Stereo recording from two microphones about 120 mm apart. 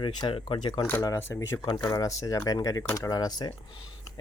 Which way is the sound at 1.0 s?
25° left (ahead or behind).